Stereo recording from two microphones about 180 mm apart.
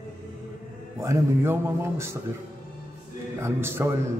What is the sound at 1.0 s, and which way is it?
A man's voice, 15° right (ahead or behind).